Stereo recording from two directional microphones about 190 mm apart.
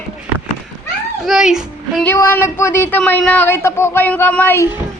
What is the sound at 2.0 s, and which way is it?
Speech, 15° left (ahead or behind).